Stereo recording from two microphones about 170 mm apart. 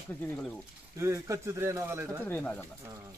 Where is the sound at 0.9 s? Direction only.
15° right (ahead or behind).